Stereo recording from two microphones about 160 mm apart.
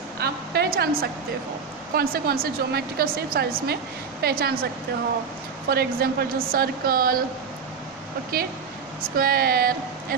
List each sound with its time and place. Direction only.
0.2 s a sound: 85° right
2.0 s a woman's voice: 70° right (ahead or behind)
5.7 s a woman's voice: 75° right (ahead or behind)
8.3 s a woman's voice: 65° right (ahead or behind)